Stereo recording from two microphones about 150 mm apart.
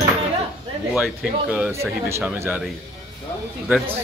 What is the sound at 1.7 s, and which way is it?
Speech, 20° right (ahead or behind).